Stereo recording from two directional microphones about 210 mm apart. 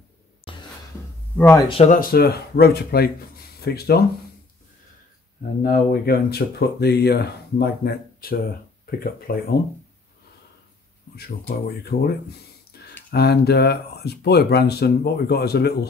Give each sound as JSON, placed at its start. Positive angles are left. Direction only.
{"t": 0.5, "sound": "a sound", "side_deg": 25}
{"t": 1.3, "sound": "speech", "side_deg": 10}
{"t": 1.7, "sound": "speech", "side_deg": 30}
{"t": 2.0, "sound": "speech", "side_deg": 45}
{"t": 5.6, "sound": "speech", "side_deg": 45}
{"t": 11.1, "sound": "speech", "side_deg": 50}
{"t": 12.7, "sound": "a sound", "side_deg": 50}
{"t": 13.1, "sound": "speech", "side_deg": 50}